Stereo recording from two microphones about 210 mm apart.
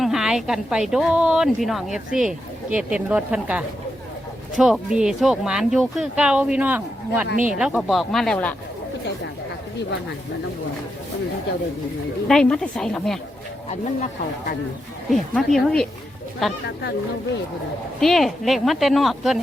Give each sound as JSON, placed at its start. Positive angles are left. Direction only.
{"t": 0.0, "sound": "a woman's voice", "side_deg": 0}
{"t": 12.3, "sound": "a woman's voice", "side_deg": 5}
{"t": 13.7, "sound": "speech", "side_deg": 35}
{"t": 15.1, "sound": "a woman's voice", "side_deg": 0}
{"t": 18.0, "sound": "a woman's voice", "side_deg": 0}